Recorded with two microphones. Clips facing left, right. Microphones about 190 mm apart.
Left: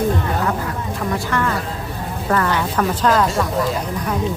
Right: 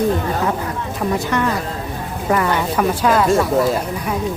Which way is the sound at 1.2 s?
20° right (ahead or behind).